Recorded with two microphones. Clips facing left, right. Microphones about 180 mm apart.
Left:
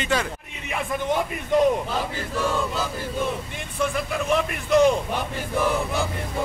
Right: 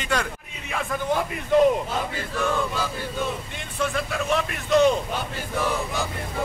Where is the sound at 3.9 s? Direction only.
10° left (ahead or behind).